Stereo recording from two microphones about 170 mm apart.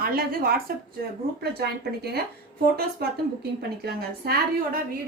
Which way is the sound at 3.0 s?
65° right (ahead or behind).